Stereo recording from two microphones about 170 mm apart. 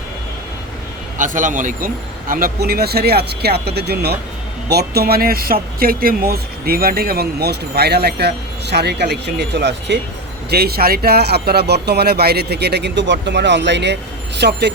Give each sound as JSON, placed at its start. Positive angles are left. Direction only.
{"t": 1.2, "sound": "speech", "side_deg": -50}
{"t": 2.3, "sound": "speech", "side_deg": -60}
{"t": 10.5, "sound": "speech", "side_deg": -65}